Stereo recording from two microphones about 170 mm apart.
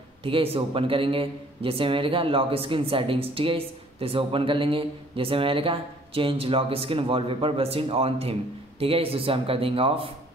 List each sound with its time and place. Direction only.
0.2 s a man's voice: 35° right (ahead or behind)